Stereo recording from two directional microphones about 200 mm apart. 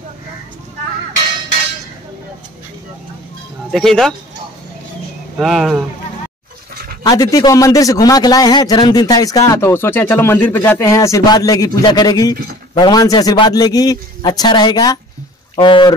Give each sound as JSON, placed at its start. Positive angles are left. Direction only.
{"t": 3.7, "sound": "speech", "side_deg": 0}
{"t": 5.4, "sound": "speech", "side_deg": 0}
{"t": 7.0, "sound": "a man's voice", "side_deg": 20}